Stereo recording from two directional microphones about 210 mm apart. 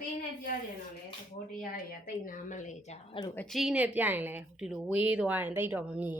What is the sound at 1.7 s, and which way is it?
A woman's voice, 40° left (ahead or behind).